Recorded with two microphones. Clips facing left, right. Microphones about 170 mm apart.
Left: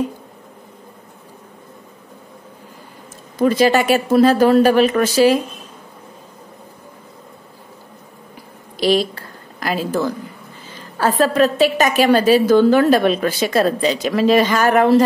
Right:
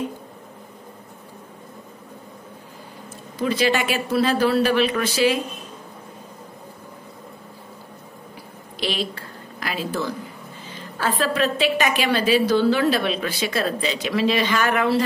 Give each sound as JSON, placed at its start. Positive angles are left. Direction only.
{"t": 3.3, "sound": "a woman's voice", "side_deg": 45}
{"t": 8.7, "sound": "a woman's voice", "side_deg": 40}